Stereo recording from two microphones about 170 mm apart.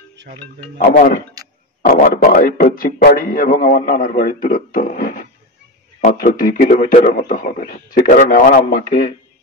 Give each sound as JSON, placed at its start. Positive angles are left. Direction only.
{"t": 0.7, "sound": "a man's voice", "side_deg": 60}
{"t": 1.4, "sound": "a sound", "side_deg": -20}
{"t": 1.9, "sound": "a man's voice", "side_deg": 50}